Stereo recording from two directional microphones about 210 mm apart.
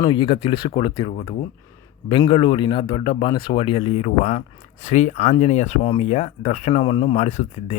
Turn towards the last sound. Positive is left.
turn(degrees=35)  # may be behind; listen again after turning